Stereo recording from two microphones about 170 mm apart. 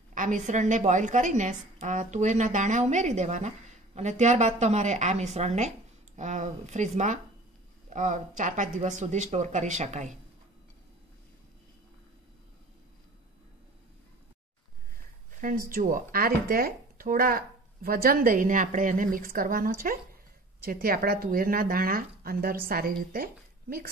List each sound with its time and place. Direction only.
0.1 s a woman's voice: 50° right (ahead or behind)
15.7 s speech: 55° right (ahead or behind)